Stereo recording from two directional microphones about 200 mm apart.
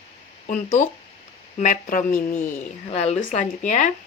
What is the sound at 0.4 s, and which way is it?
Speech, 35° left (ahead or behind).